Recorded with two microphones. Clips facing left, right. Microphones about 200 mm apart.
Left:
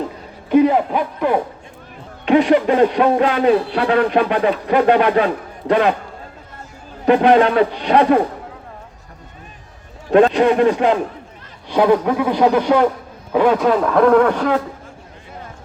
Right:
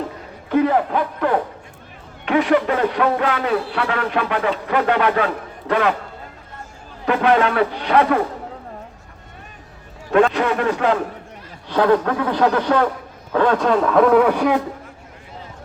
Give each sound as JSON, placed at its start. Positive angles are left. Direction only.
{"t": 0.5, "sound": "speech", "side_deg": 15}
{"t": 7.0, "sound": "speech", "side_deg": 25}
{"t": 10.2, "sound": "a man's voice", "side_deg": 20}